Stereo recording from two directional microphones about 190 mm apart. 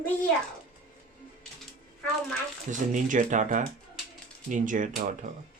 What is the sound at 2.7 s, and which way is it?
Speech, 40° right (ahead or behind).